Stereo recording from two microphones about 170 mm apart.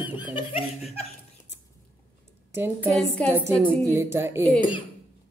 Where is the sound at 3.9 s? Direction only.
15° right (ahead or behind).